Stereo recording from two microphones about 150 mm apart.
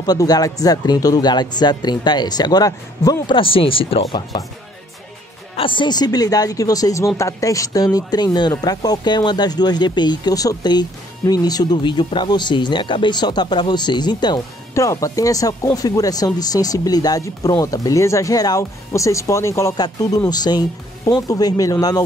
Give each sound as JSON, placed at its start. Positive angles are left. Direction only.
{"t": 0.0, "sound": "speech", "side_deg": 25}
{"t": 5.6, "sound": "speech", "side_deg": 35}